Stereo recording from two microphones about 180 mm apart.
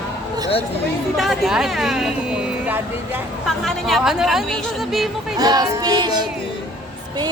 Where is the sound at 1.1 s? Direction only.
Centre (ahead or behind).